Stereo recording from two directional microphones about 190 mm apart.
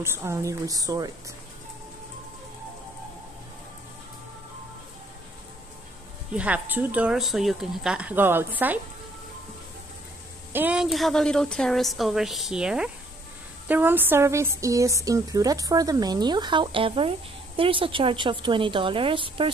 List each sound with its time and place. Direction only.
0.0 s speech: 10° right (ahead or behind)
6.3 s speech: 10° right (ahead or behind)
10.5 s a woman's voice: 5° right (ahead or behind); by 19.5 s 25° right (ahead or behind)